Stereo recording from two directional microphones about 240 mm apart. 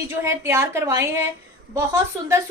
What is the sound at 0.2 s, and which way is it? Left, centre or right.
A woman's voice, centre.